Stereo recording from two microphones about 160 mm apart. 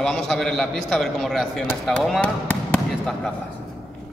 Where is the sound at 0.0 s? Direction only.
Centre (ahead or behind).